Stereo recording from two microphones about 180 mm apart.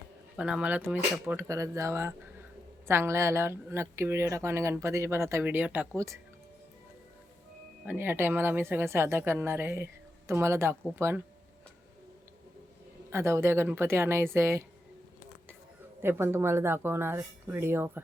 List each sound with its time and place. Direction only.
0.3 s speech: 5° right (ahead or behind)
7.9 s speech: 10° right (ahead or behind)
13.1 s speech: 15° right (ahead or behind)
16.0 s speech: 15° right (ahead or behind)